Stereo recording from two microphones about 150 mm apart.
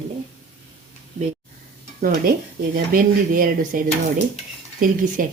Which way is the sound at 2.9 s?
75° right (ahead or behind).